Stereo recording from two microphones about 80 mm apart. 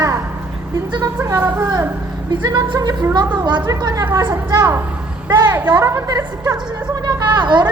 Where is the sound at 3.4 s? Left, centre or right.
Right.